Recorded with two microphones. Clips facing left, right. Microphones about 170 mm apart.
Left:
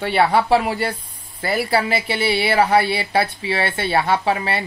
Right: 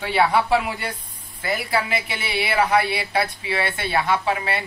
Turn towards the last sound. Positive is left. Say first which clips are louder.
# left 3 dB
turn(degrees=30)  # may be behind; listen again after turning